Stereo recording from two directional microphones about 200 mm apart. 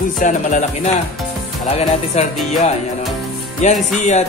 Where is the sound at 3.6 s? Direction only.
35° left (ahead or behind).